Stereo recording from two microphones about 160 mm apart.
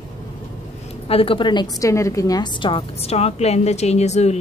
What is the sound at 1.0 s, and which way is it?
A woman's voice, 35° left (ahead or behind).